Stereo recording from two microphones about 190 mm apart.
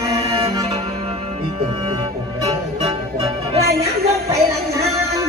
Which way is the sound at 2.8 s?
30° right (ahead or behind).